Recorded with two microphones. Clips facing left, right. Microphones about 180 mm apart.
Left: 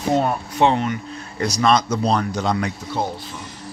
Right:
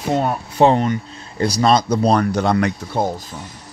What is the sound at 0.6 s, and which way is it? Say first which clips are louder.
Speech: right 4 dB; 40° right (ahead or behind).